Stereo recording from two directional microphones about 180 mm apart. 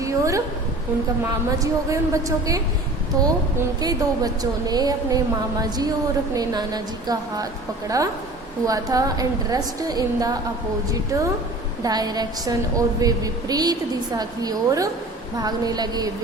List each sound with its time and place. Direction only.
0.0 s a woman's voice: 15° right (ahead or behind)
3.6 s a woman's voice: 20° right (ahead or behind)